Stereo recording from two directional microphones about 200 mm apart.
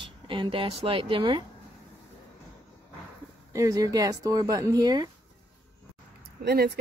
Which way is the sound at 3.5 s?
15° right (ahead or behind).